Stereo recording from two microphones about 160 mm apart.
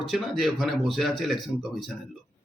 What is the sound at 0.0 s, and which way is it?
Speech, centre (ahead or behind).